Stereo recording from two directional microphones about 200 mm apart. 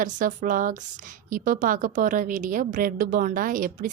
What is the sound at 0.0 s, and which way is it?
A woman's voice, 40° right (ahead or behind).